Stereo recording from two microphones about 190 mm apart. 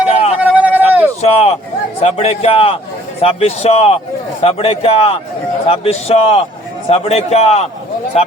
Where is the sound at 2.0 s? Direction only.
30° left (ahead or behind).